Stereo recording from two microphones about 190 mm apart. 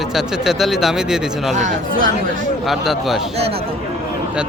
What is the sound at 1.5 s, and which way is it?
Speech, 40° right (ahead or behind).